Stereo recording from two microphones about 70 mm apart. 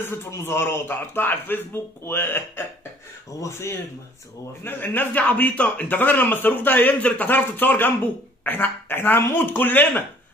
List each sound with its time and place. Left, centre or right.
0.0 s a man's voice: left